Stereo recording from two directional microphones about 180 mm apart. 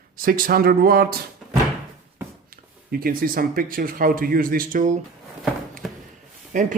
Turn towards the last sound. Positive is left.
turn(degrees=-45)  # may be behind; listen again after turning